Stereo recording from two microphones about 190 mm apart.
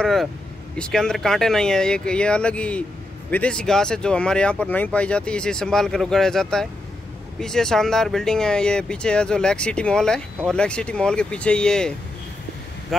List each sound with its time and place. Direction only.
0.0 s speech: centre (ahead or behind)